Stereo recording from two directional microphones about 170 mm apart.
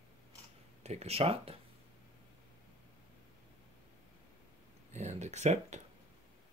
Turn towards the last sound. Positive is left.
turn(degrees=-40)  # may be behind; listen again after turning